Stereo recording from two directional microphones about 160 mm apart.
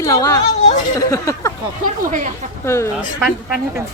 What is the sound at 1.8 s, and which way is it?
Speech, 50° right (ahead or behind).